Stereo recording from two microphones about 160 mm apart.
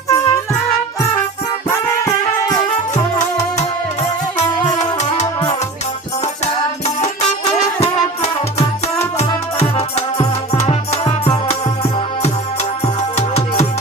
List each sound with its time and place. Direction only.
0.1 s music: 20° left (ahead or behind)
2.9 s music: 45° left (ahead or behind)
6.4 s music: 40° left (ahead or behind)
9.1 s music: 40° left (ahead or behind)